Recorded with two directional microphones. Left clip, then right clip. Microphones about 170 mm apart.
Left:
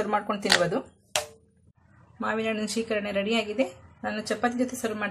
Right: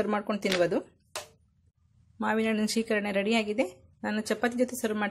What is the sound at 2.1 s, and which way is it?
Speech, 50° right (ahead or behind).